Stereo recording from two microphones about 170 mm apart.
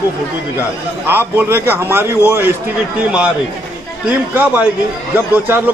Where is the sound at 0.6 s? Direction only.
10° right (ahead or behind).